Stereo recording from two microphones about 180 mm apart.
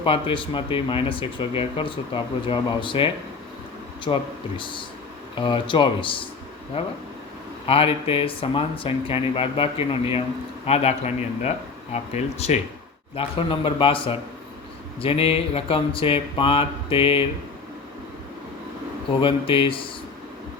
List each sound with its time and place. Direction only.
0.0 s speech: 30° left (ahead or behind)
19.2 s speech: 30° left (ahead or behind)